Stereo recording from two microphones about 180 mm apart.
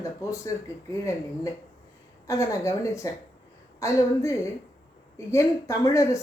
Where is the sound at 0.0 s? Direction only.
15° left (ahead or behind).